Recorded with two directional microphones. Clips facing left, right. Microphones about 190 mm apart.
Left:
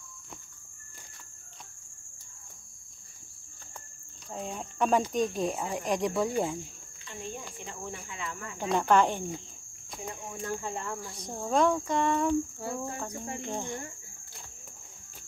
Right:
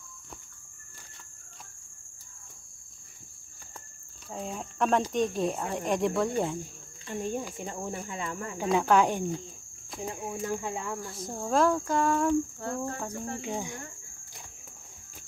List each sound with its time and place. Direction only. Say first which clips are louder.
4.3 s speech: right 1 dB; centre (ahead or behind)
7.1 s cricket: right 8 dB; 45° right (ahead or behind)
8.5 s speech: right 1 dB; 5° right (ahead or behind)
10.2 s speech: right 3 dB; 5° right (ahead or behind)
12.3 s cricket: right 2 dB; 5° left (ahead or behind)
13.4 s speech: right 1 dB; 10° right (ahead or behind)